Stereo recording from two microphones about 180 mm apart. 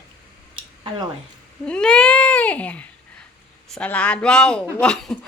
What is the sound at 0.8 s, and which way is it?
Speech, 25° right (ahead or behind).